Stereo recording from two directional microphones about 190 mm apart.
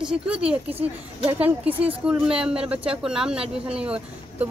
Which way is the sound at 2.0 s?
5° right (ahead or behind).